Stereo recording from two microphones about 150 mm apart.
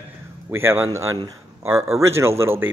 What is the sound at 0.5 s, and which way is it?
Speech, 15° right (ahead or behind).